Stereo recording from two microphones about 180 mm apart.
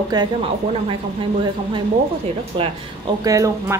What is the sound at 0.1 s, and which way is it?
Speech, 20° right (ahead or behind).